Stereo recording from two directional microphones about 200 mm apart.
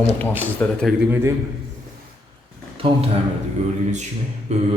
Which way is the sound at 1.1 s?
15° right (ahead or behind).